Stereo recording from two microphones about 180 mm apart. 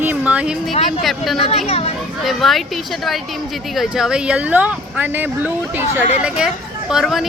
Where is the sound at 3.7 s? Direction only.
Centre (ahead or behind).